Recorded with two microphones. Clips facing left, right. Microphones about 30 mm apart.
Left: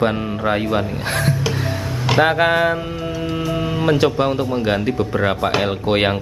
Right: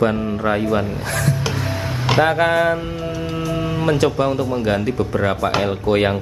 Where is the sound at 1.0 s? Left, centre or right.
Left.